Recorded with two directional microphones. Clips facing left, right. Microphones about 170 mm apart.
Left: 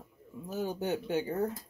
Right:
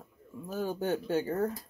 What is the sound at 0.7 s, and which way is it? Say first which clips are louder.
Speech: right 3 dB; 15° left (ahead or behind).